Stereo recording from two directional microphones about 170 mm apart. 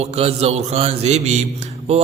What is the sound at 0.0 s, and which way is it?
Mantra, 40° right (ahead or behind).